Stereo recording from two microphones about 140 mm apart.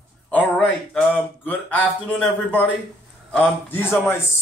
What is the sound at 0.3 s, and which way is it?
Speech, 10° left (ahead or behind).